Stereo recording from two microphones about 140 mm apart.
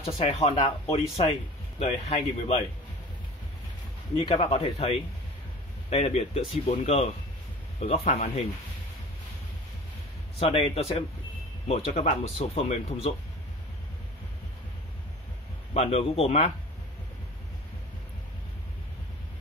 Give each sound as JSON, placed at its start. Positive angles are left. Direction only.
{"t": 0.2, "sound": "speech", "side_deg": 50}
{"t": 4.2, "sound": "speech", "side_deg": 45}
{"t": 10.4, "sound": "speech", "side_deg": 45}
{"t": 15.7, "sound": "speech", "side_deg": 45}